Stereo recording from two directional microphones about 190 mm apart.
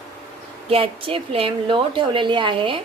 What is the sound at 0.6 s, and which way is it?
A woman's voice, 30° right (ahead or behind).